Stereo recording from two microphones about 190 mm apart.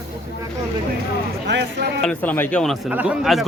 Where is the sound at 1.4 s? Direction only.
60° right (ahead or behind).